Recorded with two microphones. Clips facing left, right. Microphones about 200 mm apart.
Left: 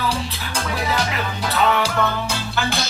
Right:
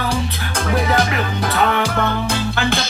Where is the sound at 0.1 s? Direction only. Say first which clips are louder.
Right 3 dB; 55° right (ahead or behind).